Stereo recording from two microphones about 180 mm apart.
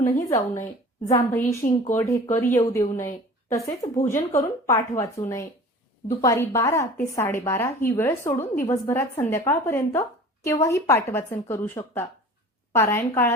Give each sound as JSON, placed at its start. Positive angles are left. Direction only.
{"t": 0.0, "sound": "speech", "side_deg": 15}